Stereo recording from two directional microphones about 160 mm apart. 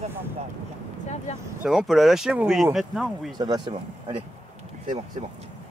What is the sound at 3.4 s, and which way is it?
Speech, 30° right (ahead or behind).